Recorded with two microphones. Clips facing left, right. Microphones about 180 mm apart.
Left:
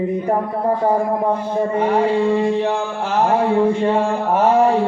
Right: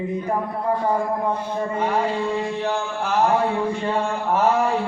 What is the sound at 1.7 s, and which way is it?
Music, 30° left (ahead or behind).